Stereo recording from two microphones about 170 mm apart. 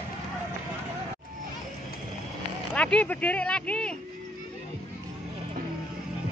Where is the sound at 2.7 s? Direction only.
5° left (ahead or behind).